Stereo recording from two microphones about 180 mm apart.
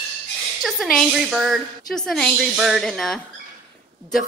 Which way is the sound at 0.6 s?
Centre (ahead or behind).